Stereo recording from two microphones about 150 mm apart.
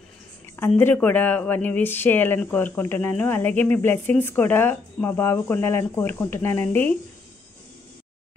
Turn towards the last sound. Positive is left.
turn(degrees=15)  # may be behind; listen again after turning